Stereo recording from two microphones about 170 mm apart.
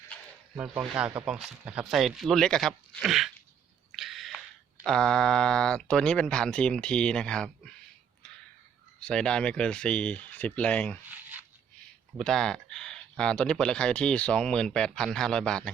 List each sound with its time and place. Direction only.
0.5 s speech: 10° right (ahead or behind)
3.9 s a sound: centre (ahead or behind)
4.9 s speech: 5° left (ahead or behind)
9.0 s speech: 5° left (ahead or behind)
12.1 s speech: 5° left (ahead or behind)